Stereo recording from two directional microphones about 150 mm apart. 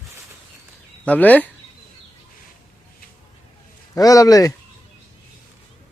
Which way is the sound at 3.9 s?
25° left (ahead or behind).